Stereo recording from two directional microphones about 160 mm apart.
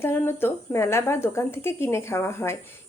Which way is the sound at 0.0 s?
15° left (ahead or behind).